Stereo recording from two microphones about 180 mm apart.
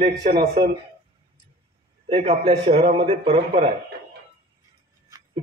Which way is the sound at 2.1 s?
35° right (ahead or behind).